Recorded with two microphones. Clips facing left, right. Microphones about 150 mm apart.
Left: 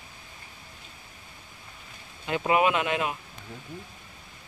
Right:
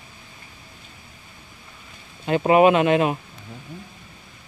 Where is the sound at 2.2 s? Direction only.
45° right (ahead or behind).